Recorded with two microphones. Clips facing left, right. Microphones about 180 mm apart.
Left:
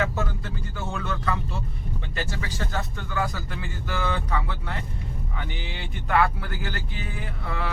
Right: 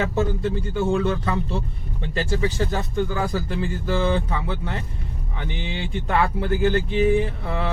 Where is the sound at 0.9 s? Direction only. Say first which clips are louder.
Right 7 dB; 30° right (ahead or behind).